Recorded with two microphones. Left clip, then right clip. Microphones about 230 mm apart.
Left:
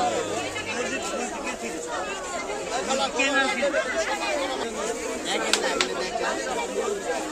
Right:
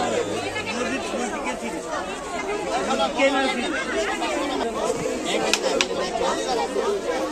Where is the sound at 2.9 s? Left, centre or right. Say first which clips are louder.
Right 3 dB; left.